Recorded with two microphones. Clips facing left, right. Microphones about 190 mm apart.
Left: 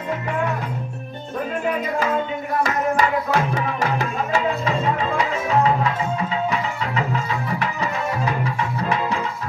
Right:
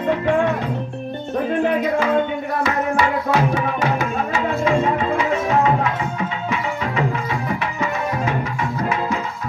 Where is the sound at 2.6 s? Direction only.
45° left (ahead or behind).